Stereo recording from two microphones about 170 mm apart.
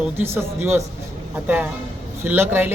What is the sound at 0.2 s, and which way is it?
A woman's voice, 15° right (ahead or behind).